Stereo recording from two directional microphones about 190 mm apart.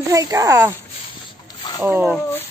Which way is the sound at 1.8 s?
10° right (ahead or behind).